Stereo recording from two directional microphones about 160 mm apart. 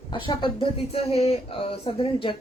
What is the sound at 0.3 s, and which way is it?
Speech, 30° left (ahead or behind).